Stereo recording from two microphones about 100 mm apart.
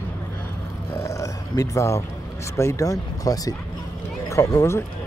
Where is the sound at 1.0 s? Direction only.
30° left (ahead or behind).